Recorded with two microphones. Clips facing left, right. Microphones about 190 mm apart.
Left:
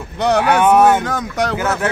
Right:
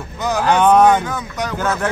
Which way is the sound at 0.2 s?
75° left (ahead or behind).